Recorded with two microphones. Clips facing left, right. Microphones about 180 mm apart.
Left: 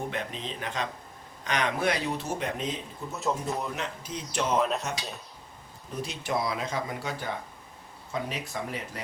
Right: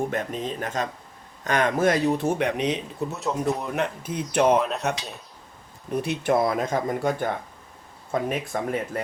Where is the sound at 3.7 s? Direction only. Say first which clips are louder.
Right 8 dB; 55° right (ahead or behind).